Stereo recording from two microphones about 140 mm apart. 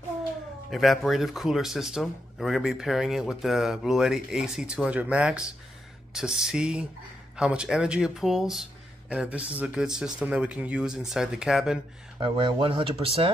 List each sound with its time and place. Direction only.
0.7 s speech: centre (ahead or behind)
12.2 s speech: 35° right (ahead or behind)